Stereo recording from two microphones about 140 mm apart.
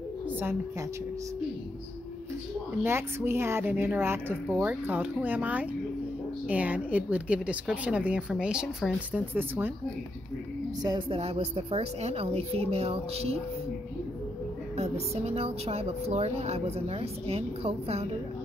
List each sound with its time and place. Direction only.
2.8 s a woman's voice: 15° right (ahead or behind)
10.8 s a woman's voice: 30° right (ahead or behind)
11.1 s a woman's voice: 45° right (ahead or behind)
14.8 s a woman's voice: 50° right (ahead or behind)